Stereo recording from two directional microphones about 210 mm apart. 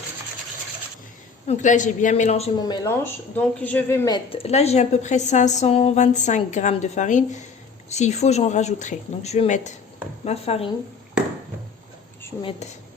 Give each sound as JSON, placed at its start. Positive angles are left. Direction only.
{"t": 1.5, "sound": "speech", "side_deg": 35}
{"t": 12.4, "sound": "speech", "side_deg": 25}